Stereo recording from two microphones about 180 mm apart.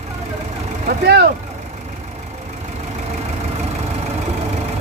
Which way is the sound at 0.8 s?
65° right (ahead or behind).